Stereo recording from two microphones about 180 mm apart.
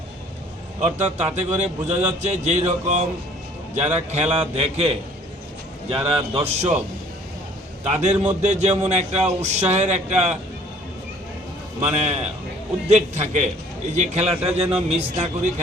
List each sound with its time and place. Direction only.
0.8 s a man's voice: 40° right (ahead or behind)
8.0 s a man's voice: 40° right (ahead or behind)
11.8 s a man's voice: 35° right (ahead or behind)